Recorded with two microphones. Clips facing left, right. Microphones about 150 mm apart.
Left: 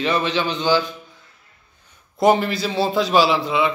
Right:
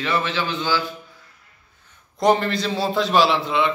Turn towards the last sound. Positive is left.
turn(degrees=0)  # may be behind; listen again after turning